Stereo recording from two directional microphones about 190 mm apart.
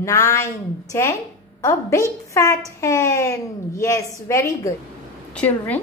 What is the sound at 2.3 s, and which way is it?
A woman's voice, 15° left (ahead or behind).